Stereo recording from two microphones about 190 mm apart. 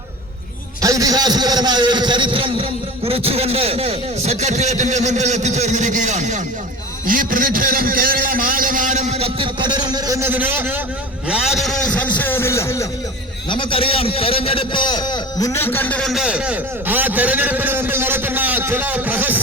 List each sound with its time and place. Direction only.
0.8 s a man's voice: 20° right (ahead or behind); by 6.4 s 40° right (ahead or behind)
7.1 s a sound: 45° right (ahead or behind); by 12.9 s 15° left (ahead or behind)
13.5 s a man's voice: 25° left (ahead or behind); by 19.4 s 10° right (ahead or behind)